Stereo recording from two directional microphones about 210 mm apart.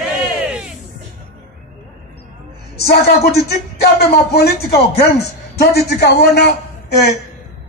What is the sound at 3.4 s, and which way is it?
Speech, 50° left (ahead or behind).